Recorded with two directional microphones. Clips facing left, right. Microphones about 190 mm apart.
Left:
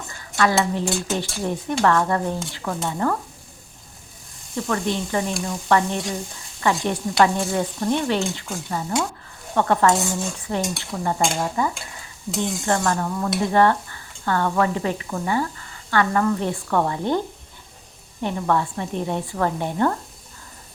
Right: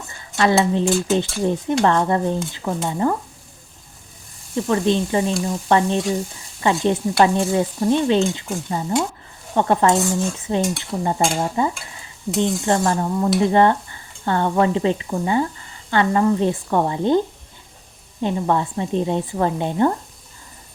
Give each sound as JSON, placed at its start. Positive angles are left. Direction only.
{"t": 0.3, "sound": "stir", "side_deg": -25}
{"t": 4.5, "sound": "stir", "side_deg": -20}
{"t": 18.2, "sound": "stir", "side_deg": -15}